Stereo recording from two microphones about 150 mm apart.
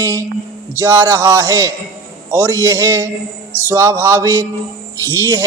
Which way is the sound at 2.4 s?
15° right (ahead or behind).